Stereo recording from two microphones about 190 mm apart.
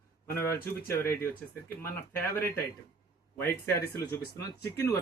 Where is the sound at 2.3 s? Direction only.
10° left (ahead or behind).